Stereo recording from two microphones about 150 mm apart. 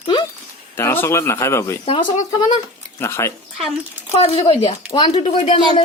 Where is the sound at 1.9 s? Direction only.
40° left (ahead or behind).